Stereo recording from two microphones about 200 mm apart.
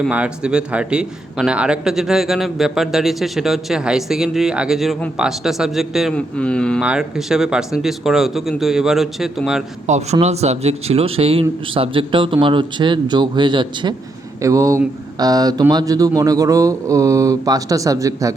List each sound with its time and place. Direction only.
0.0 s a man's voice: 5° right (ahead or behind)
9.8 s speech: 35° right (ahead or behind); by 18.3 s 15° right (ahead or behind)